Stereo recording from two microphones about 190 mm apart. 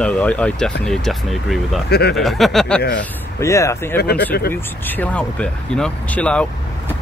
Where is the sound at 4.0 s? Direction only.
55° left (ahead or behind).